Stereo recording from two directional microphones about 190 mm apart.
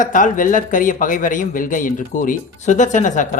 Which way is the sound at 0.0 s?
45° left (ahead or behind).